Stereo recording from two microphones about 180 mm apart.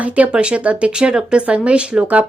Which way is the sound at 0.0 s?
5° right (ahead or behind).